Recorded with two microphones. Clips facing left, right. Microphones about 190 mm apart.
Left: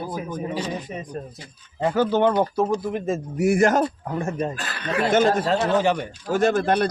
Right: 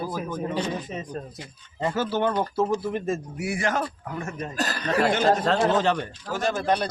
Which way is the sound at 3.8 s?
30° left (ahead or behind).